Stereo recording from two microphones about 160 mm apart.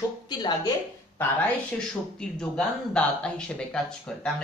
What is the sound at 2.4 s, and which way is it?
Speech, 5° left (ahead or behind).